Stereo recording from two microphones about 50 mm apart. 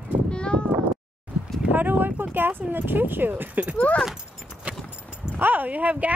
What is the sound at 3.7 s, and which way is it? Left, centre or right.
Speech, left.